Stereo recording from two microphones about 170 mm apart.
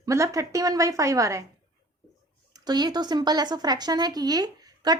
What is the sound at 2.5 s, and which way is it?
A woman's voice, 25° right (ahead or behind).